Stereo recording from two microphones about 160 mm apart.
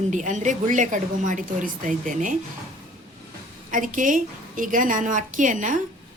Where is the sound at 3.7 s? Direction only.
55° right (ahead or behind).